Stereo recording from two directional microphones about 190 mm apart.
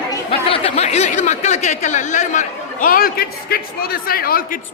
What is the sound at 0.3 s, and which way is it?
Speech, 30° left (ahead or behind).